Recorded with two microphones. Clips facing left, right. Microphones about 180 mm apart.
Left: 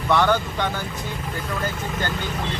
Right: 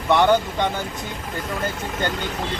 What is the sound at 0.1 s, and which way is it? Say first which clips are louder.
Speech: right 3 dB; 20° right (ahead or behind).